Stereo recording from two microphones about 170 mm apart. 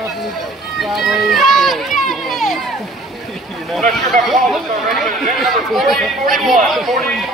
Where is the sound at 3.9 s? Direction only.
Centre (ahead or behind).